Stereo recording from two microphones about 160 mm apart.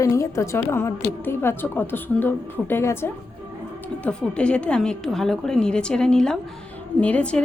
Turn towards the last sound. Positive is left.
turn(degrees=10)  # may be behind; listen again after turning